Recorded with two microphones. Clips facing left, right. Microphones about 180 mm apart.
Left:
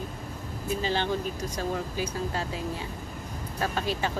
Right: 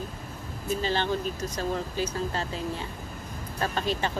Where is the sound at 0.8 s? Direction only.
10° left (ahead or behind).